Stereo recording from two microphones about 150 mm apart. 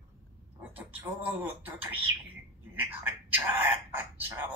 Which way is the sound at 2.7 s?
15° right (ahead or behind).